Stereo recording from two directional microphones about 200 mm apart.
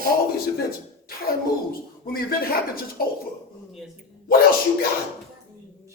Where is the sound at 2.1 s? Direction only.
50° left (ahead or behind).